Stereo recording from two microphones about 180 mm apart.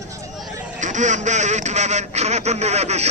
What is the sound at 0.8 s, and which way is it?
Speech, 40° right (ahead or behind).